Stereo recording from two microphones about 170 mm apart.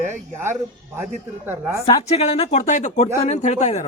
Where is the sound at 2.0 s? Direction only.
40° left (ahead or behind).